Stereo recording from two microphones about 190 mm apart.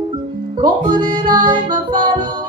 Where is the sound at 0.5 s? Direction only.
25° right (ahead or behind).